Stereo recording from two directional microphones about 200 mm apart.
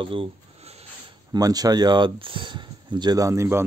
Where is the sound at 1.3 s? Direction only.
20° right (ahead or behind).